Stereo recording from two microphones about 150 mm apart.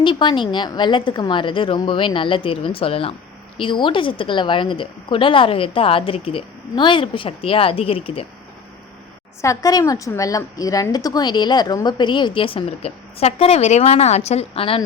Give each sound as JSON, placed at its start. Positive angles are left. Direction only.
{"t": 0.0, "sound": "a woman's voice", "side_deg": 30}
{"t": 9.4, "sound": "a woman's voice", "side_deg": 20}